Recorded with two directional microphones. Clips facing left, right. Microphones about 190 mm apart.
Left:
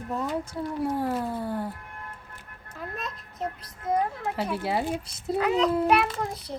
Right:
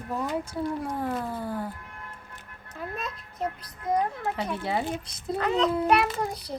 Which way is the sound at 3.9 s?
5° left (ahead or behind).